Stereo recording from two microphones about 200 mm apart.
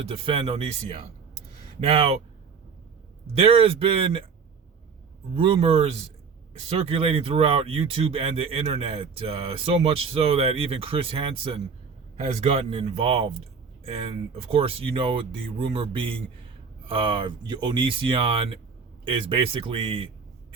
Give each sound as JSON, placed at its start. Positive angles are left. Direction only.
{"t": 0.1, "sound": "speech", "side_deg": -25}
{"t": 3.3, "sound": "speech", "side_deg": -30}
{"t": 5.3, "sound": "speech", "side_deg": -25}